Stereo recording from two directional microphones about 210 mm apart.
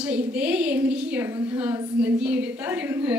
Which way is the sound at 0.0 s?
5° right (ahead or behind).